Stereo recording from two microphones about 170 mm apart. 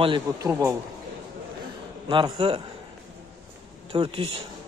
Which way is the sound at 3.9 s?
30° right (ahead or behind).